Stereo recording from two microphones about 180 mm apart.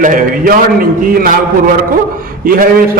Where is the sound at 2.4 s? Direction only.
55° right (ahead or behind).